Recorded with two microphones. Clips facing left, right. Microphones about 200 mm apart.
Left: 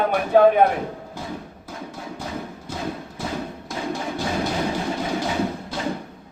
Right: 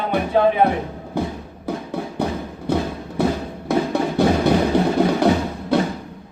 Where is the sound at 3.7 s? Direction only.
65° right (ahead or behind).